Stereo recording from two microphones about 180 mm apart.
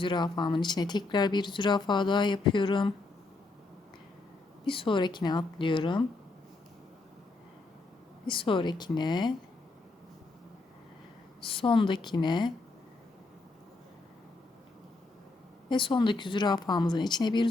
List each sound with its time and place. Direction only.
0.0 s speech: 25° left (ahead or behind)
4.6 s speech: 30° left (ahead or behind)
8.3 s speech: 30° left (ahead or behind)
11.4 s speech: 30° left (ahead or behind)
15.7 s speech: 25° left (ahead or behind)